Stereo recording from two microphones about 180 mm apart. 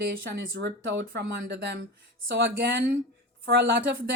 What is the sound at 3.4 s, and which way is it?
Speech, 70° right (ahead or behind).